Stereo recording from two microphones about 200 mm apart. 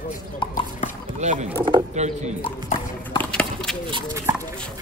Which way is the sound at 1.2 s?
35° right (ahead or behind).